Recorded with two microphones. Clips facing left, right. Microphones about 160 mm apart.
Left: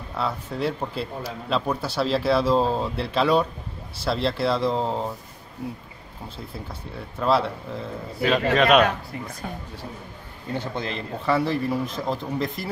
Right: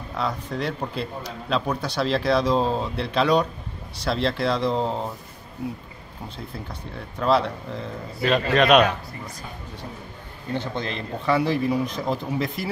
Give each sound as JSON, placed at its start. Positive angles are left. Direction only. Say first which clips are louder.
{"t": 0.1, "sound": "a man's voice", "louder": "right 1 dB", "side_deg": 5}
{"t": 7.2, "sound": "a man's voice", "louder": "right 1 dB", "side_deg": 5}
{"t": 10.5, "sound": "a man's voice", "louder": "right 1 dB", "side_deg": 10}